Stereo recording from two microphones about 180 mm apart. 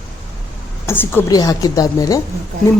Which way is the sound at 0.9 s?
15° left (ahead or behind).